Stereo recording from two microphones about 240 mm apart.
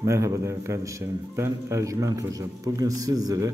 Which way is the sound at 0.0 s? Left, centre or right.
Centre.